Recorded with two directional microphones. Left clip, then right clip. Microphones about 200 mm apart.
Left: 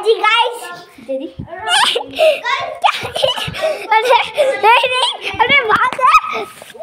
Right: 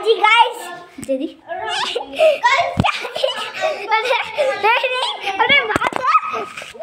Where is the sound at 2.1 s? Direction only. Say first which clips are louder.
Right 2 dB; 5° left (ahead or behind).